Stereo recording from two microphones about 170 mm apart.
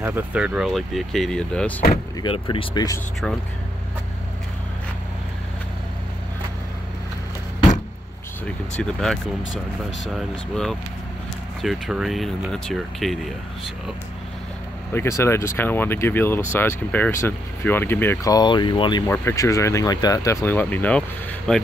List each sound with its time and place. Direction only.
0.0 s speech: 10° right (ahead or behind); by 1.8 s 5° left (ahead or behind)
2.2 s speech: 30° left (ahead or behind)
8.7 s speech: 5° left (ahead or behind)
14.9 s speech: 15° left (ahead or behind)
19.0 s speech: 15° left (ahead or behind)